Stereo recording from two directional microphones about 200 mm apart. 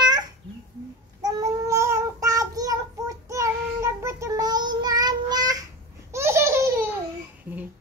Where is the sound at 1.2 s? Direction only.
15° right (ahead or behind).